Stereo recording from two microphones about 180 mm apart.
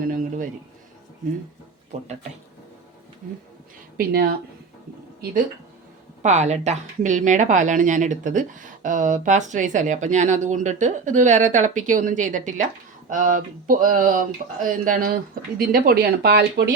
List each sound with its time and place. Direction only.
0.0 s a sound: 50° right (ahead or behind)
3.9 s speech: 55° right (ahead or behind)
6.2 s speech: 40° right (ahead or behind); by 16.6 s 65° right (ahead or behind)